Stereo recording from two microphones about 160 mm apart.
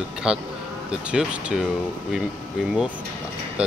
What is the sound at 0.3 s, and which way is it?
Speech, 5° right (ahead or behind).